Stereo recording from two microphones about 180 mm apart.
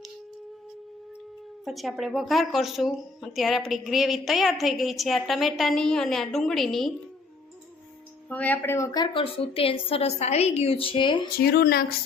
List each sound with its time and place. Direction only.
1.6 s a woman's voice: centre (ahead or behind)
8.3 s a woman's voice: 10° left (ahead or behind); by 11.3 s 25° left (ahead or behind)
11.3 s speech: 55° left (ahead or behind)